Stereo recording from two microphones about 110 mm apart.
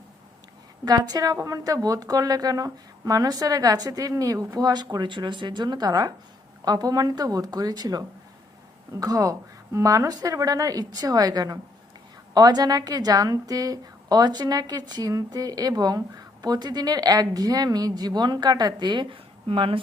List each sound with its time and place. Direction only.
0.9 s a woman's voice: 35° right (ahead or behind); by 19.8 s 55° right (ahead or behind)